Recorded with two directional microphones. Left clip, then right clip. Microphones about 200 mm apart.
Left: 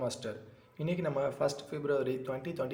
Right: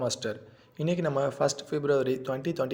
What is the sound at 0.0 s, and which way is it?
Speech, 35° right (ahead or behind).